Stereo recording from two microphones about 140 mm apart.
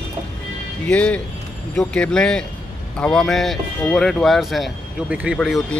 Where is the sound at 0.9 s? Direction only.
10° left (ahead or behind); by 5.3 s 10° right (ahead or behind).